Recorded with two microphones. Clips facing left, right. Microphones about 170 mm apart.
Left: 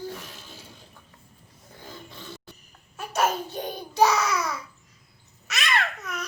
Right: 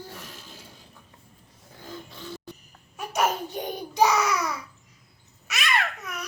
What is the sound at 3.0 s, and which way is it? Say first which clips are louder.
Child singing: even; 15° right (ahead or behind).